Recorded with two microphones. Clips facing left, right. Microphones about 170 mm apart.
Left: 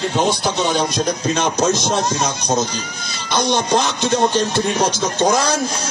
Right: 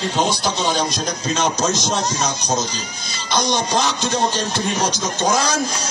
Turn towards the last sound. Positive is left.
turn(degrees=55)  # may be behind; listen again after turning